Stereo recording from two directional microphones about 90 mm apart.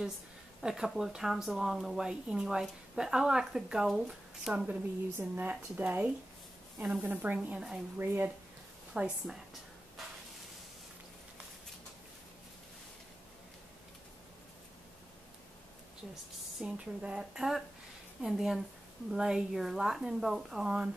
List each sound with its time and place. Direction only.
0.6 s speech: 5° right (ahead or behind)
5.3 s speech: 20° right (ahead or behind)
8.0 s speech: 25° right (ahead or behind)
8.9 s a sound: 10° right (ahead or behind)
16.6 s speech: 10° right (ahead or behind)